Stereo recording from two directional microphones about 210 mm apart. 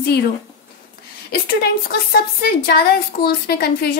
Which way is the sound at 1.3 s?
50° left (ahead or behind).